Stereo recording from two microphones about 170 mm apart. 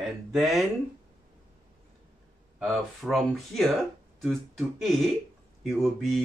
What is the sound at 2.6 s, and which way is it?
Speech, centre (ahead or behind).